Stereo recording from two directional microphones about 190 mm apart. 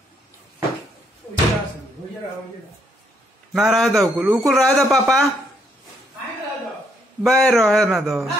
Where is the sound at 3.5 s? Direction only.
Centre (ahead or behind).